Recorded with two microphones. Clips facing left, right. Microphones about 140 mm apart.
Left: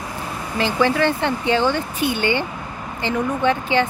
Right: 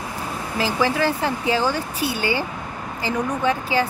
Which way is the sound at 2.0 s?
35° right (ahead or behind).